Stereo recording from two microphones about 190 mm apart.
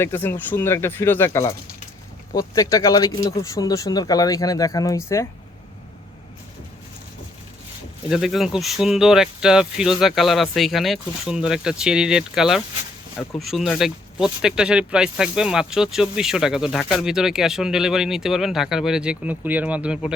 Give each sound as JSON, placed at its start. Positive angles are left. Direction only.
{"t": 0.0, "sound": "speech", "side_deg": 10}
{"t": 8.1, "sound": "speech", "side_deg": 0}